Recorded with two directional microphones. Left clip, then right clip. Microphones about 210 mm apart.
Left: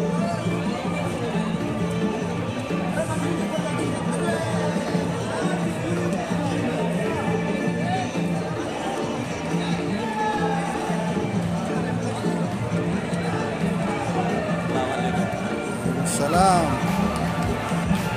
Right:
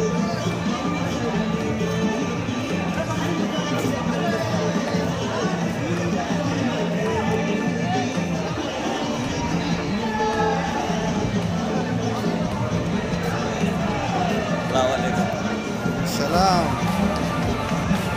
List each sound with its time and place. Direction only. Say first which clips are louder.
16.3 s music: left 1 dB; 25° left (ahead or behind)